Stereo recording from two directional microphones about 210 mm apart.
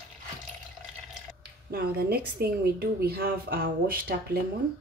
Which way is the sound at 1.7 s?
45° right (ahead or behind).